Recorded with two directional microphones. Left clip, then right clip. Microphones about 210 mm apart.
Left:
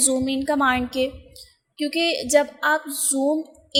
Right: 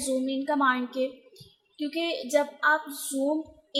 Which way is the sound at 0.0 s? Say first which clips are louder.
Left 6 dB; 25° left (ahead or behind).